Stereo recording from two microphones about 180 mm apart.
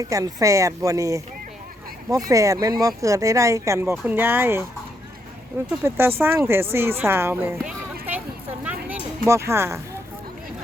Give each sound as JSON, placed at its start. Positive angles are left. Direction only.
{"t": 0.0, "sound": "speech", "side_deg": -20}
{"t": 5.8, "sound": "speech", "side_deg": -10}
{"t": 8.6, "sound": "a sound", "side_deg": -10}